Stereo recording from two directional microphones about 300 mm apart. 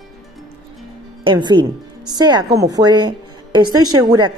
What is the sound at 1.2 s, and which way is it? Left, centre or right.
A woman's voice, centre.